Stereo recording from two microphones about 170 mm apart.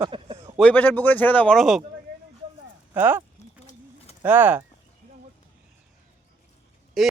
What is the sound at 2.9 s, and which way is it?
Speech, 10° right (ahead or behind).